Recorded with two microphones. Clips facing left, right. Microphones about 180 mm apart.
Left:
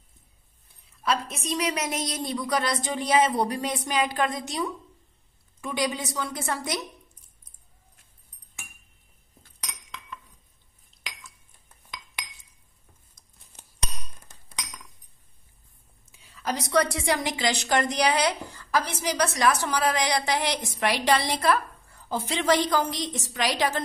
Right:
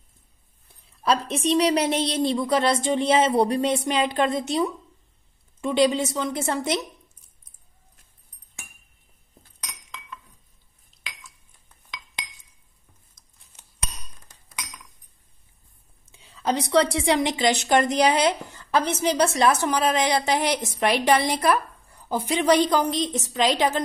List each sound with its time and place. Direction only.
1.0 s a woman's voice: 30° right (ahead or behind)
16.1 s a woman's voice: 25° right (ahead or behind)